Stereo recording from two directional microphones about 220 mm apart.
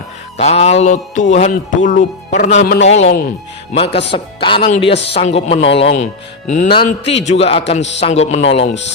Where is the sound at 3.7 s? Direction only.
25° left (ahead or behind).